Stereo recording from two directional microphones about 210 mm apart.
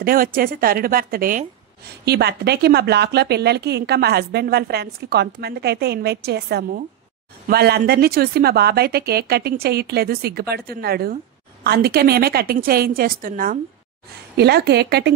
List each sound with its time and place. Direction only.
0.0 s a woman's voice: 45° right (ahead or behind)